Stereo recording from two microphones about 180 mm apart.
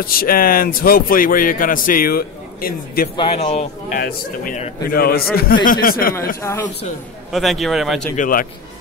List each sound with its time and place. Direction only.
0.0 s a man's voice: 55° left (ahead or behind)
3.2 s speech: 35° left (ahead or behind)
4.8 s a man's voice: 55° left (ahead or behind)
6.4 s a man's voice: 15° left (ahead or behind)
7.3 s a man's voice: centre (ahead or behind)
8.2 s a man's voice: 50° left (ahead or behind)